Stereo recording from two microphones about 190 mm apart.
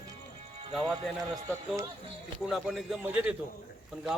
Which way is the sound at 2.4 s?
Centre (ahead or behind).